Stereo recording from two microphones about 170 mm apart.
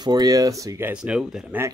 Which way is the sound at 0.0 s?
25° right (ahead or behind).